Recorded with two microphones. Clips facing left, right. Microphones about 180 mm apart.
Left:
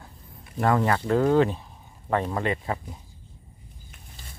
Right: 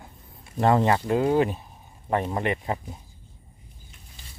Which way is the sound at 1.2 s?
10° right (ahead or behind).